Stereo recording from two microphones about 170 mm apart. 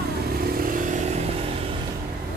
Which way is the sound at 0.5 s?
55° right (ahead or behind).